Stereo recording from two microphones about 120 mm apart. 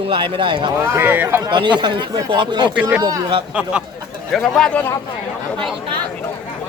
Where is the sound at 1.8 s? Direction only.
35° right (ahead or behind).